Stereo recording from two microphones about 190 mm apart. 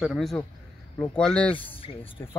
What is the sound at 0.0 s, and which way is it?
A man's voice, centre (ahead or behind).